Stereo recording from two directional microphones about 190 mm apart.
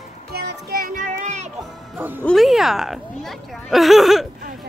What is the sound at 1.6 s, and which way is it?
Music, 10° right (ahead or behind).